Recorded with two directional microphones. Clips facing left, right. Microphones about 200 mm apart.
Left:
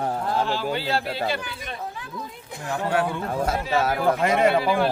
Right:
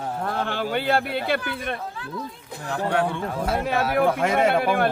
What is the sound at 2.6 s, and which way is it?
Speech, 5° left (ahead or behind).